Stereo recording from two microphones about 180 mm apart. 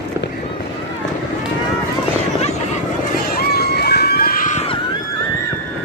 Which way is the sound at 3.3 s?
60° left (ahead or behind).